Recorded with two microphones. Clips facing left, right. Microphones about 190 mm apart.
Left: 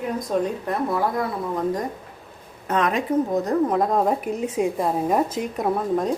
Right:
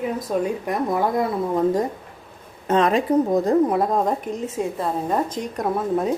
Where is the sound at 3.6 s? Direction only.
5° right (ahead or behind).